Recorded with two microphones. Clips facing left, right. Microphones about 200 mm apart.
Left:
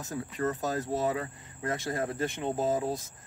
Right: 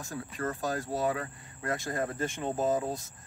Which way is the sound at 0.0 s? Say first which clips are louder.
Left 3 dB; 20° left (ahead or behind).